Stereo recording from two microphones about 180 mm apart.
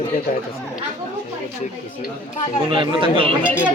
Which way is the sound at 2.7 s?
30° right (ahead or behind).